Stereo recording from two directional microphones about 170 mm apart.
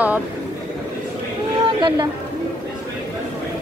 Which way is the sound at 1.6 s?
25° right (ahead or behind).